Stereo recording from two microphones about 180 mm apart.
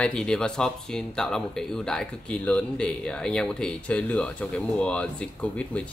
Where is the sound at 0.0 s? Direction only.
5° left (ahead or behind).